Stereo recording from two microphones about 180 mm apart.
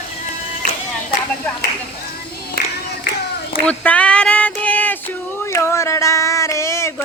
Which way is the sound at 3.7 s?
5° left (ahead or behind).